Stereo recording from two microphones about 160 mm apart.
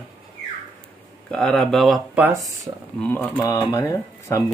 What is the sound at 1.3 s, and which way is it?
Speech, 5° left (ahead or behind).